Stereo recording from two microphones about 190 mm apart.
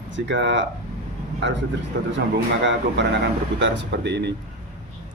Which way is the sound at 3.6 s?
65° right (ahead or behind).